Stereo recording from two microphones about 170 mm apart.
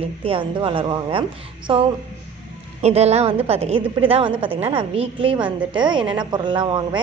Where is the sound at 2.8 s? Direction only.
40° right (ahead or behind).